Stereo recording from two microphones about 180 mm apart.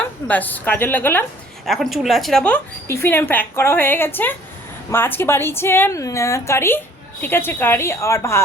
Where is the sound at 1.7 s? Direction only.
Centre (ahead or behind).